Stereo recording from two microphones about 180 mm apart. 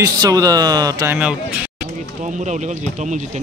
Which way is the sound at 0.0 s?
20° right (ahead or behind).